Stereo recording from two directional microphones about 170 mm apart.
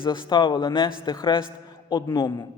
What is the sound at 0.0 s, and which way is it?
A man's voice, 30° left (ahead or behind).